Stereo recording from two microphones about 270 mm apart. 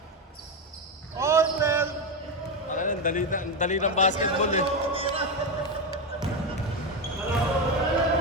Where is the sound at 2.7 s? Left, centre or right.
Left.